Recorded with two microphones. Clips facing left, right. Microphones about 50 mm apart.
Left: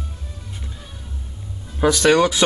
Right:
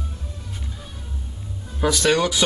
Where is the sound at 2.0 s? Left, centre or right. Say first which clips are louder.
Left 4 dB; left.